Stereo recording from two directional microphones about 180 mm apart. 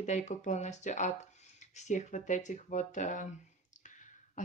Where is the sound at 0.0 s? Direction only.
40° left (ahead or behind).